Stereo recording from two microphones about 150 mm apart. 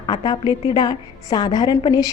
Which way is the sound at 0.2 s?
30° left (ahead or behind).